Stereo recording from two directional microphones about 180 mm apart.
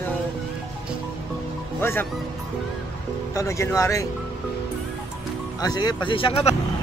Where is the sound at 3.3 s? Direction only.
15° left (ahead or behind).